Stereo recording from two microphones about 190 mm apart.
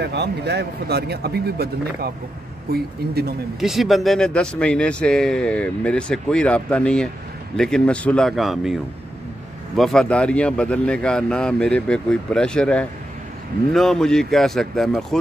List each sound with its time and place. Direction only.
0.0 s speech: 60° right (ahead or behind)
3.5 s speech: centre (ahead or behind)
9.8 s speech: centre (ahead or behind)